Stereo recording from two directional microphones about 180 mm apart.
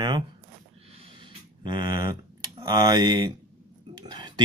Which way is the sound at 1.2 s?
25° right (ahead or behind).